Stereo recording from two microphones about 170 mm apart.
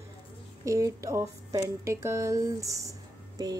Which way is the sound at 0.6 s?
20° right (ahead or behind).